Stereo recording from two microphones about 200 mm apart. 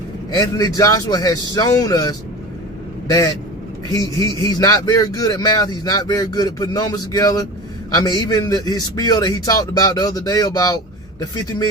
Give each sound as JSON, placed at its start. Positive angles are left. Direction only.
{"t": 0.3, "sound": "a man's voice", "side_deg": 20}